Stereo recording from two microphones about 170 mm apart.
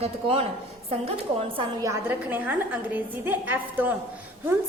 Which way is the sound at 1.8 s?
15° right (ahead or behind).